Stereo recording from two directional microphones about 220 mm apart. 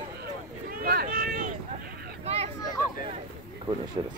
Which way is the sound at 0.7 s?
40° right (ahead or behind).